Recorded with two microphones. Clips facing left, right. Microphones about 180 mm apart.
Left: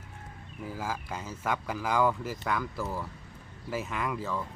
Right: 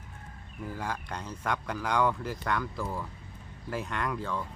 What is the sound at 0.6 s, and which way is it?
A man's voice, centre (ahead or behind).